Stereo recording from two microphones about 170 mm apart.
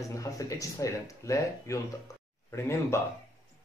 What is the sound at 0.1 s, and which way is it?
Speech, 20° left (ahead or behind).